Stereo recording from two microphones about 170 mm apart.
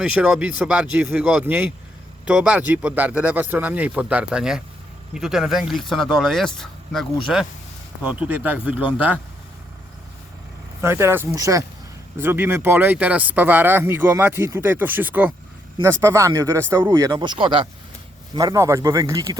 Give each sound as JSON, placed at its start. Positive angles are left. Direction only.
{"t": 0.0, "sound": "speech", "side_deg": -5}
{"t": 10.8, "sound": "a man's voice", "side_deg": -15}
{"t": 18.3, "sound": "a man's voice", "side_deg": -20}